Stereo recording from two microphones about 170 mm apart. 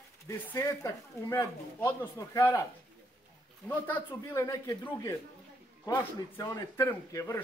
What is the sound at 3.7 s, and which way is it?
A man's voice, 10° left (ahead or behind).